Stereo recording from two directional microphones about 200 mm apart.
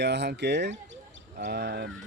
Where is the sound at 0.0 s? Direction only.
60° right (ahead or behind).